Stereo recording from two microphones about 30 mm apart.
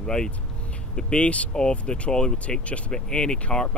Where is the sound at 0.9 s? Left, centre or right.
Left.